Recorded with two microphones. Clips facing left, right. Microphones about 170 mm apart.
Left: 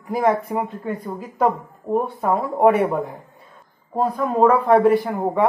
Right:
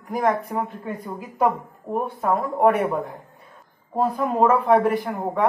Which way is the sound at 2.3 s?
15° left (ahead or behind).